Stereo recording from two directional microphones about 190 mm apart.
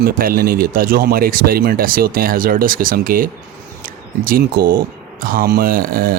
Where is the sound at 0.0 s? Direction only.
50° right (ahead or behind).